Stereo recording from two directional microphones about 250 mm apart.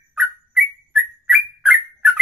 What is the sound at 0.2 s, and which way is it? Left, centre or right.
Bird, centre.